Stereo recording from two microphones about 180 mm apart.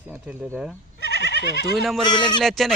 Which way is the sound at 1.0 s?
65° left (ahead or behind).